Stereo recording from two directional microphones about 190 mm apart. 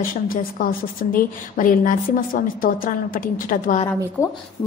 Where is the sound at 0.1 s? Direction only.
45° left (ahead or behind).